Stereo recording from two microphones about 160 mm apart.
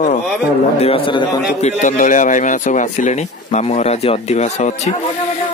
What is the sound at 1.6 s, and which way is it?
Speech, 55° left (ahead or behind).